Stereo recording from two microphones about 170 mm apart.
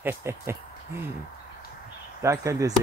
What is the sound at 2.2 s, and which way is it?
Speech, 15° right (ahead or behind).